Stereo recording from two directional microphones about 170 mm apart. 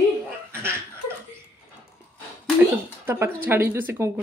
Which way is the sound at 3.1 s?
15° right (ahead or behind).